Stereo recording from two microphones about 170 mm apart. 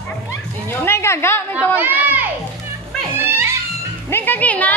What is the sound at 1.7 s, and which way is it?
Children playing, 10° right (ahead or behind).